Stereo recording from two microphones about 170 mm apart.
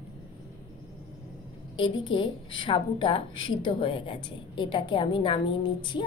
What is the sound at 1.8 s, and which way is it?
A woman's voice, 30° left (ahead or behind).